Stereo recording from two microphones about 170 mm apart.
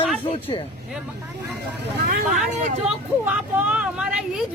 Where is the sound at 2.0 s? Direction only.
65° right (ahead or behind).